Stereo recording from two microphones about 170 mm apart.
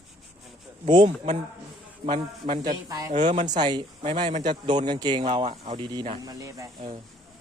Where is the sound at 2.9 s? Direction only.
20° right (ahead or behind).